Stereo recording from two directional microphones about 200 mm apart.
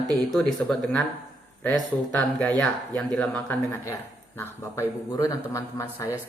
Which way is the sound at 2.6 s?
5° left (ahead or behind).